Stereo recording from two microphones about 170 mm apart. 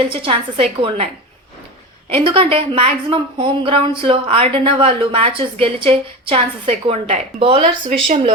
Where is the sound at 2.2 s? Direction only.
30° right (ahead or behind).